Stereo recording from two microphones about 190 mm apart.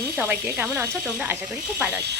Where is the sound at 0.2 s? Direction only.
10° right (ahead or behind).